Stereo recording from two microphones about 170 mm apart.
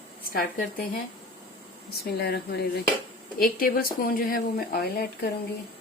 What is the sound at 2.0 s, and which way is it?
Cutlery, 70° left (ahead or behind).